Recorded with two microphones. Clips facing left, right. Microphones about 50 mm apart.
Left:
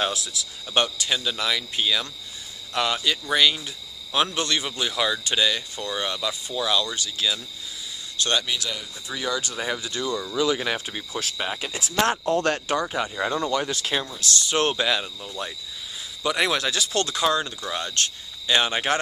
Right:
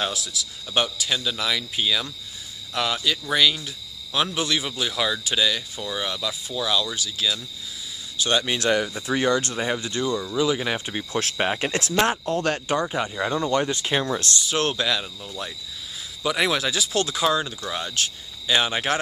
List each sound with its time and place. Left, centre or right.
0.0 s speech: centre
8.2 s speech: centre
8.5 s speech: right
9.8 s speech: right
10.1 s speech: centre
11.3 s speech: right
12.1 s speech: centre
13.5 s speech: right
14.4 s speech: centre